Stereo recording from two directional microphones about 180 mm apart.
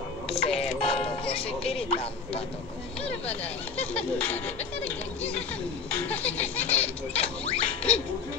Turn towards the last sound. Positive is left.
turn(degrees=35)  # may be behind; listen again after turning